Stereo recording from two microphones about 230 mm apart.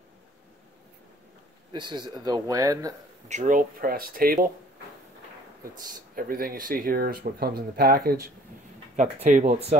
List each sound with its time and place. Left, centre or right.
1.7 s speech: centre
3.3 s speech: right
5.8 s speech: right